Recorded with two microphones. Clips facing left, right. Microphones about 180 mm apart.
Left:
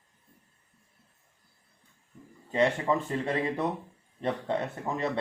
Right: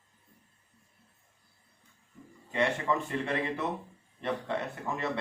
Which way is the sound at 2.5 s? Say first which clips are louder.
Left 4 dB; 35° left (ahead or behind).